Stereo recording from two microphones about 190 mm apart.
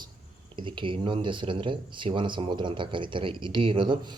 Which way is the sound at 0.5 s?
25° right (ahead or behind).